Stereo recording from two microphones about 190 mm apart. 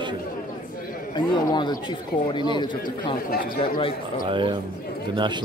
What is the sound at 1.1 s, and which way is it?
A man's voice, 25° left (ahead or behind).